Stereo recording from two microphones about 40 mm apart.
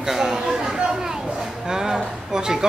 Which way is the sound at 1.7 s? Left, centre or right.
Centre.